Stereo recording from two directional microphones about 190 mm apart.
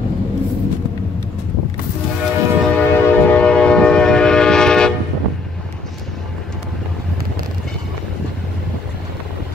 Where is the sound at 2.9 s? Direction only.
10° left (ahead or behind).